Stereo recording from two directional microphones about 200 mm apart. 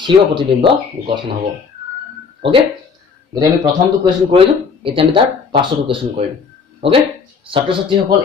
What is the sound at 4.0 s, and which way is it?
Speech, 25° right (ahead or behind).